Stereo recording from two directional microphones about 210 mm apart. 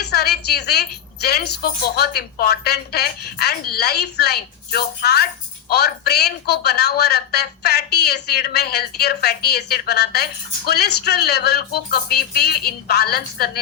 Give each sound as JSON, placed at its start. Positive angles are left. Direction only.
{"t": 0.0, "sound": "a woman's voice", "side_deg": 50}